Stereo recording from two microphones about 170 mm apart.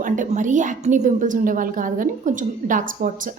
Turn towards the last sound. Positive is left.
turn(degrees=-50)  # may be behind; listen again after turning